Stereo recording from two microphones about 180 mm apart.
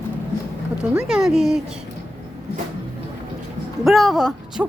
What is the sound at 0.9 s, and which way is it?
Speech, 5° right (ahead or behind).